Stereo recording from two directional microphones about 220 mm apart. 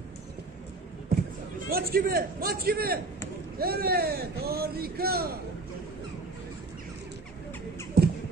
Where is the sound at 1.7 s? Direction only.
45° right (ahead or behind).